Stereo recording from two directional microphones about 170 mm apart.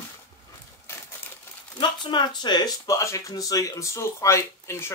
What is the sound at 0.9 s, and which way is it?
Crumpling, 15° left (ahead or behind).